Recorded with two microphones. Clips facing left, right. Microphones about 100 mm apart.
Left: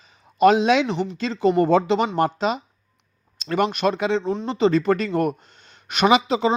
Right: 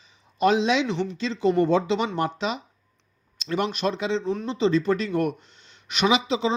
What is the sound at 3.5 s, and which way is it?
Speech, 55° left (ahead or behind).